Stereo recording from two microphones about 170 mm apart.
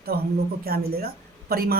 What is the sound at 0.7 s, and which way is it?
A woman's voice, 65° right (ahead or behind).